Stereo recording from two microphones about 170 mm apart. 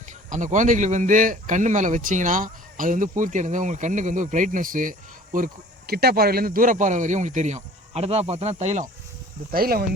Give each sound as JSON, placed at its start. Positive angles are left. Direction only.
{"t": 0.3, "sound": "speech", "side_deg": -50}
{"t": 9.5, "sound": "speech", "side_deg": -60}